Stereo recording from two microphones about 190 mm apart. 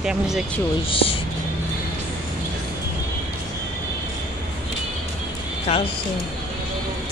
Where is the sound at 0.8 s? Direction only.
30° left (ahead or behind).